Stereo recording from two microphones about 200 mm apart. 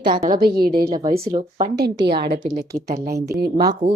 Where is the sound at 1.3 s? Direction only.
30° right (ahead or behind).